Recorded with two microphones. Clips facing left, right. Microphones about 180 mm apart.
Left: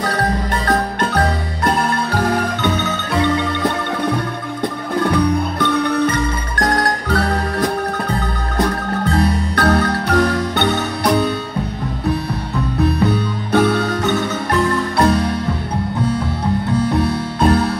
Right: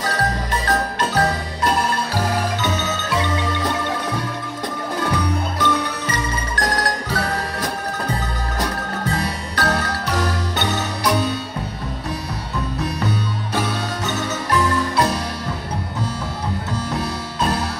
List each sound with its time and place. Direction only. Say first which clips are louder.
0.7 s music: left 3 dB; 55° left (ahead or behind)
5.6 s music: left 7 dB; 60° left (ahead or behind)
12.8 s marimba: left 9 dB; 60° left (ahead or behind)
16.7 s music: left 10 dB; 60° left (ahead or behind)